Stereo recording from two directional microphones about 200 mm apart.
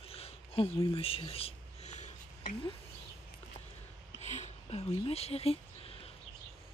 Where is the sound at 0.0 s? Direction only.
30° left (ahead or behind).